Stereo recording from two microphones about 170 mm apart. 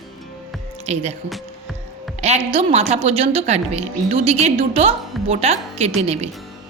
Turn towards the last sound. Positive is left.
turn(degrees=-40)  # may be behind; listen again after turning